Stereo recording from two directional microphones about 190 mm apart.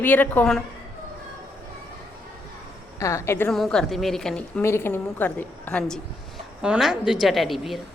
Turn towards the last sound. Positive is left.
turn(degrees=0)  # may be behind; listen again after turning